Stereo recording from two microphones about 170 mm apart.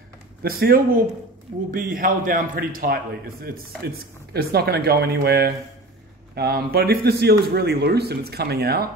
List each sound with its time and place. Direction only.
0.4 s a man's voice: 60° right (ahead or behind)